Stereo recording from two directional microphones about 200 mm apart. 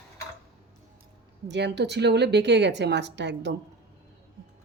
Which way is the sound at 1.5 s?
60° right (ahead or behind).